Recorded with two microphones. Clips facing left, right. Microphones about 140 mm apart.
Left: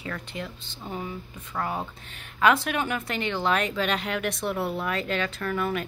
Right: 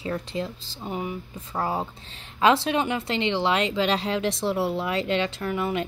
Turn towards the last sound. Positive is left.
turn(degrees=-20)  # may be behind; listen again after turning